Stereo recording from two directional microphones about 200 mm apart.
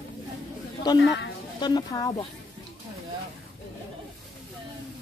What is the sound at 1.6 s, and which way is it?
Speech, 20° left (ahead or behind).